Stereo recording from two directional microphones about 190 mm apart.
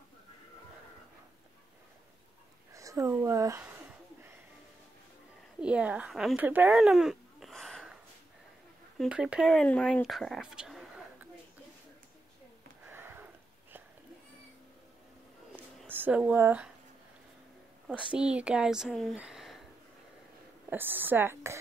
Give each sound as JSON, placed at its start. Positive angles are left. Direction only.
{"t": 2.7, "sound": "speech", "side_deg": -15}
{"t": 5.6, "sound": "speech", "side_deg": -5}
{"t": 12.8, "sound": "sniff", "side_deg": -10}
{"t": 15.9, "sound": "speech", "side_deg": -10}
{"t": 18.1, "sound": "speech", "side_deg": -5}
{"t": 20.7, "sound": "speech", "side_deg": -10}